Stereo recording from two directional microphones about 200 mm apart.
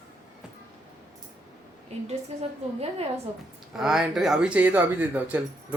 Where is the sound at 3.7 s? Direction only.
Centre (ahead or behind).